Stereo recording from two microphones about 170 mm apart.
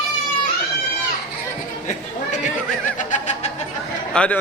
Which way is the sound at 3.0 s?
45° left (ahead or behind).